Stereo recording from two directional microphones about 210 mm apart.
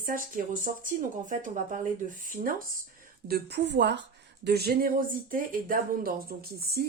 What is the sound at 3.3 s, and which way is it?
Speech, 50° right (ahead or behind).